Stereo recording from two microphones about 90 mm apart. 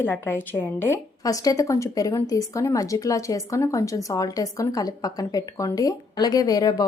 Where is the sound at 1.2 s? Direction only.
40° left (ahead or behind).